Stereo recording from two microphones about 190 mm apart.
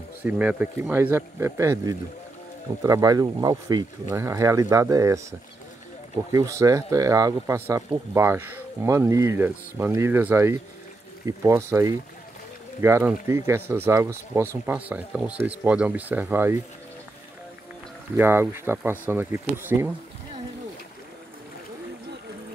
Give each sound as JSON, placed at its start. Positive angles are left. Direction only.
{"t": 0.2, "sound": "speech", "side_deg": -5}
{"t": 6.3, "sound": "speech", "side_deg": -15}
{"t": 18.1, "sound": "speech", "side_deg": -10}